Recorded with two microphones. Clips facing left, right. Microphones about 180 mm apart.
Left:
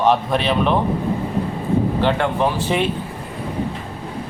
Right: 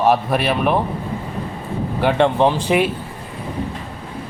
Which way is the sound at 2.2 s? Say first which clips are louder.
Right 4 dB; 20° right (ahead or behind).